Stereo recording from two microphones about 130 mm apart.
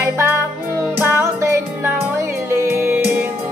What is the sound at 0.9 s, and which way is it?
Music, 15° right (ahead or behind).